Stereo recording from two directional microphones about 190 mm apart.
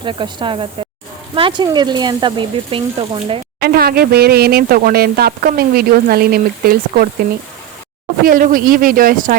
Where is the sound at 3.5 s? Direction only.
55° right (ahead or behind).